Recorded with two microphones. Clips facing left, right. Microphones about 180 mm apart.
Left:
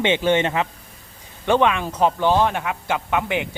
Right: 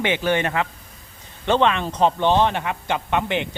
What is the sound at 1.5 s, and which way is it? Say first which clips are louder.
Speech: left 1 dB; 10° left (ahead or behind).